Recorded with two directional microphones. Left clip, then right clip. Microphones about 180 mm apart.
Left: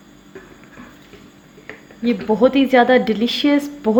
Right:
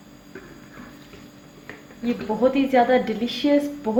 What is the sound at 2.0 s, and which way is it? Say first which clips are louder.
A woman's voice: left 6 dB; 55° left (ahead or behind).